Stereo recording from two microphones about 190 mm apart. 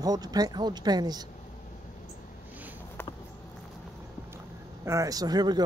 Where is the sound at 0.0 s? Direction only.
20° right (ahead or behind).